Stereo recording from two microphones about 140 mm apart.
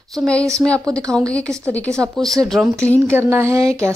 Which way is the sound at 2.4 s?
Centre (ahead or behind).